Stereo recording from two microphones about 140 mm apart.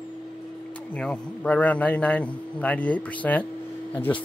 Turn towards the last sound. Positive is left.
turn(degrees=10)  # may be behind; listen again after turning